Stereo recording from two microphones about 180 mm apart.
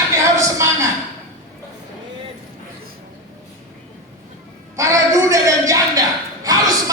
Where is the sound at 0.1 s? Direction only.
15° right (ahead or behind).